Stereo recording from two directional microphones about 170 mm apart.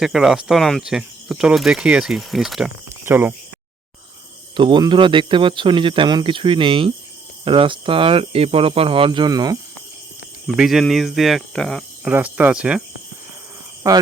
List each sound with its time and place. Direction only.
0.0 s speech: 5° right (ahead or behind)
3.0 s speech: 15° right (ahead or behind)
4.5 s speech: 25° right (ahead or behind)
10.4 s speech: centre (ahead or behind)
12.0 s speech: 10° right (ahead or behind)
13.8 s speech: 20° right (ahead or behind)